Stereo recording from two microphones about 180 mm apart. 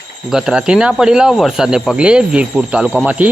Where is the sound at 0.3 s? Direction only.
Centre (ahead or behind).